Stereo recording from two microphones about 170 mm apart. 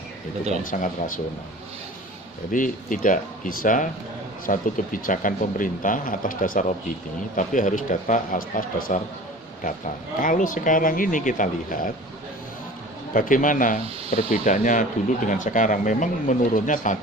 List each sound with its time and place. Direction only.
0.6 s speech: 50° left (ahead or behind)
2.5 s speech: 50° left (ahead or behind)
10.2 s speech: 50° left (ahead or behind)
13.1 s speech: 50° left (ahead or behind)